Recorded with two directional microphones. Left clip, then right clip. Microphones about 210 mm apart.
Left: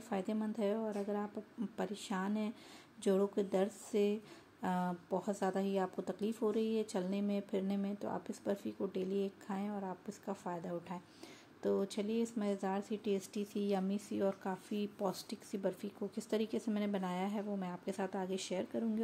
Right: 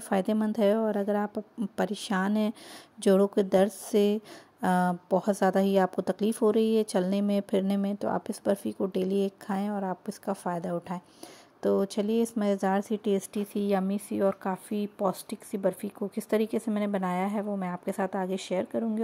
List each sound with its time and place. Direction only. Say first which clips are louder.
0.1 s a woman's voice: right 12 dB; 40° right (ahead or behind)
13.4 s speech: right 9 dB; 20° right (ahead or behind)